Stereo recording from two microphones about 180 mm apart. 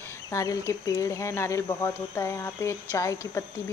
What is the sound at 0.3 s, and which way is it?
Speech, 15° left (ahead or behind).